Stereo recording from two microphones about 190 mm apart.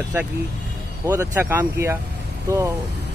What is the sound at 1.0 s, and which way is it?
Speech, 15° right (ahead or behind).